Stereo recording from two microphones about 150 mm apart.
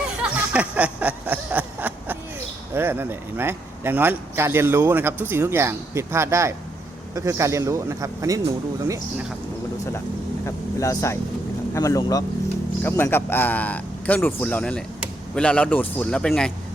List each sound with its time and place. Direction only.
0.2 s a sound: 10° right (ahead or behind)
2.7 s speech: 15° right (ahead or behind)
10.4 s a man's voice: 20° left (ahead or behind)